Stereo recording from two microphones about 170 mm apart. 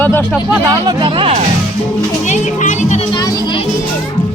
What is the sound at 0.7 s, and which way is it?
Speech, 20° right (ahead or behind).